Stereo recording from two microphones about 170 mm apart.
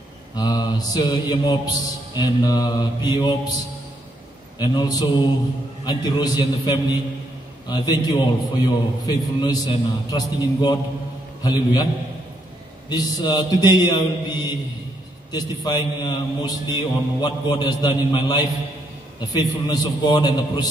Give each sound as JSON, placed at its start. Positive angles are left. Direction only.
{"t": 0.4, "sound": "a man's voice", "side_deg": 25}
{"t": 4.6, "sound": "a man's voice", "side_deg": 25}
{"t": 12.9, "sound": "a man's voice", "side_deg": 25}